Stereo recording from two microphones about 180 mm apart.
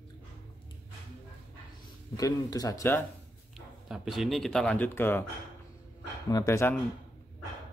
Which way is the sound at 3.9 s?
Centre (ahead or behind).